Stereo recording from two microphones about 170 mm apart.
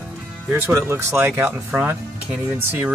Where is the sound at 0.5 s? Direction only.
15° right (ahead or behind).